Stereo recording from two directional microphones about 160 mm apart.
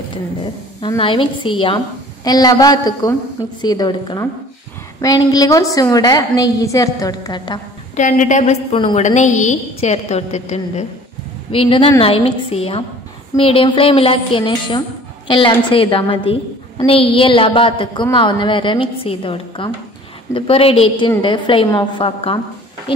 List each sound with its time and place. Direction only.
0.4 s a woman's voice: 30° left (ahead or behind)
7.9 s a woman's voice: 50° left (ahead or behind)
11.5 s a woman's voice: 35° left (ahead or behind)